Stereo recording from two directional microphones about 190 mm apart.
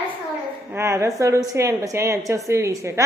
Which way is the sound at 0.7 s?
15° right (ahead or behind).